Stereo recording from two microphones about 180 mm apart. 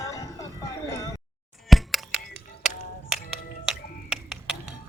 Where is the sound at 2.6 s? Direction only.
Centre (ahead or behind).